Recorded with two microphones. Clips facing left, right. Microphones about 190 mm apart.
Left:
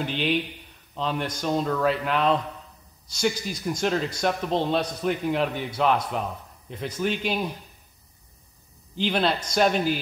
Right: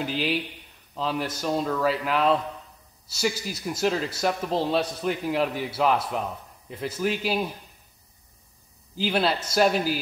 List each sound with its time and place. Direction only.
0.0 s a man's voice: 5° right (ahead or behind)
8.9 s a man's voice: 5° right (ahead or behind)